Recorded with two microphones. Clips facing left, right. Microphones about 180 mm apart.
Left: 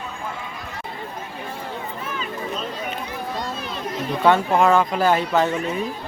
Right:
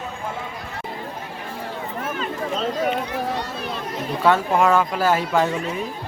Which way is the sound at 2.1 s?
75° right (ahead or behind).